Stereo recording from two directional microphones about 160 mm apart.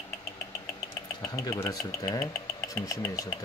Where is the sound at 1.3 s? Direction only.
20° left (ahead or behind).